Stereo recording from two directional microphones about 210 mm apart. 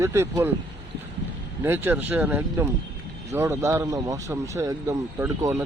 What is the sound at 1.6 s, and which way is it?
Speech, 10° right (ahead or behind).